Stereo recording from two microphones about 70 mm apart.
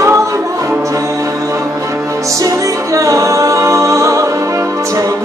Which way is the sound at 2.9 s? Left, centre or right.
Right.